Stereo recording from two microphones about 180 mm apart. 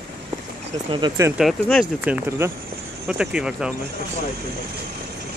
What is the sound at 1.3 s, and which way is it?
Speech, centre (ahead or behind).